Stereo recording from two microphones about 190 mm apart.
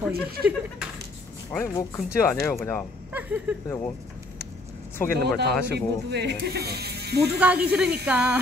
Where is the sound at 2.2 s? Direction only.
15° left (ahead or behind).